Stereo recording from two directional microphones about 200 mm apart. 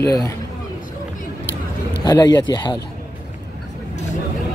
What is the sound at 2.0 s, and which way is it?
Speech, 20° left (ahead or behind).